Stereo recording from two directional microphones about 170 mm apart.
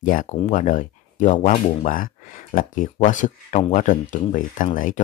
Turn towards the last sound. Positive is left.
turn(degrees=50)  # may be behind; listen again after turning